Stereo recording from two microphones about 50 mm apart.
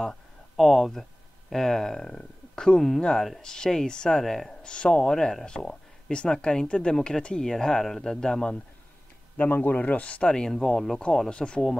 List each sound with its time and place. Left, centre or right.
0.0 s speech: centre
9.7 s speech: left; by 11.0 s centre
11.2 s speech: centre